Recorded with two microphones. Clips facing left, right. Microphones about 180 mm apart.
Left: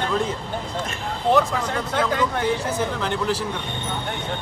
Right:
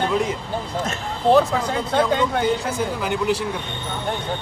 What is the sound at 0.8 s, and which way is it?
Speech, 35° right (ahead or behind).